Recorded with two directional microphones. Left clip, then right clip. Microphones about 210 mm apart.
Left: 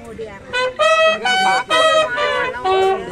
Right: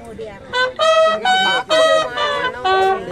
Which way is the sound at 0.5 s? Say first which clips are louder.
Even; 5° left (ahead or behind).